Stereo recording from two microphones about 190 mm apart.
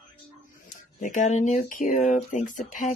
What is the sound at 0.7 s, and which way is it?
Speech, 40° left (ahead or behind).